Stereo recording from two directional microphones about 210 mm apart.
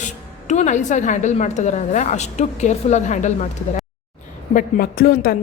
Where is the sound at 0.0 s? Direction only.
35° left (ahead or behind).